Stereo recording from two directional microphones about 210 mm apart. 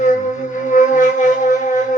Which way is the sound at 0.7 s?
35° left (ahead or behind).